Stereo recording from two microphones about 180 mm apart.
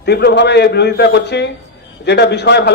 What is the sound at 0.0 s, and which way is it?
Speech, 65° left (ahead or behind).